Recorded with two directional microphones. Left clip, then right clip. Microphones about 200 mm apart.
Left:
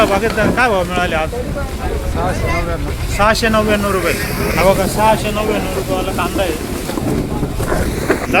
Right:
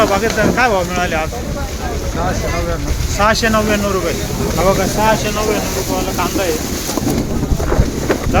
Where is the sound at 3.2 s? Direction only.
5° left (ahead or behind).